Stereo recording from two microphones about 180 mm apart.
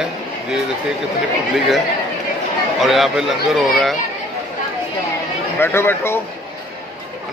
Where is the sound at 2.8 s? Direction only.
Centre (ahead or behind).